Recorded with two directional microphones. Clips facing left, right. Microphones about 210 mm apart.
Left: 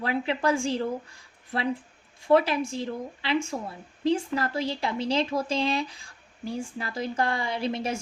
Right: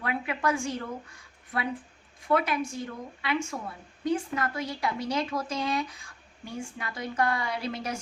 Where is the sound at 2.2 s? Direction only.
30° left (ahead or behind).